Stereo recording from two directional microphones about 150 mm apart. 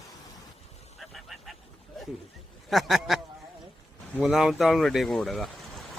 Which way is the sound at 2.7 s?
Centre (ahead or behind).